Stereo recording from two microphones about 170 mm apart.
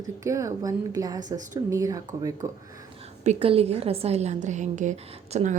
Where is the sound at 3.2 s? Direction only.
35° right (ahead or behind).